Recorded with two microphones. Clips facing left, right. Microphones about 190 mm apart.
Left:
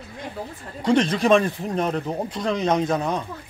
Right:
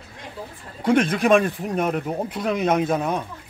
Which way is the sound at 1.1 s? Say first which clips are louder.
Even; 5° right (ahead or behind).